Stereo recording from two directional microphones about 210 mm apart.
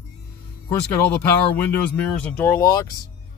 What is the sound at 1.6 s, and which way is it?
Speech, 10° left (ahead or behind).